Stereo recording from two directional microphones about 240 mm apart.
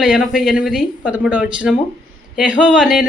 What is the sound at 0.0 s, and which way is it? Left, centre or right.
Speech, centre.